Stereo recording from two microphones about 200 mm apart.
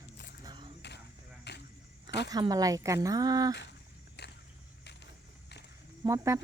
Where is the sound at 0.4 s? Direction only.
25° right (ahead or behind).